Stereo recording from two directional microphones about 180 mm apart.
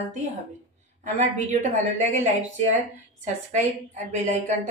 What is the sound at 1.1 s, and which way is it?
A woman's voice, 40° right (ahead or behind).